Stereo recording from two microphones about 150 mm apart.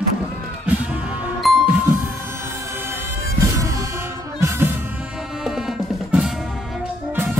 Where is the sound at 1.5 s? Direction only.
Centre (ahead or behind).